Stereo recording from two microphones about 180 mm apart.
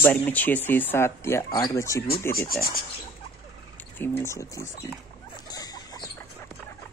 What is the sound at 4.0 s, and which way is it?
Speech, 15° left (ahead or behind).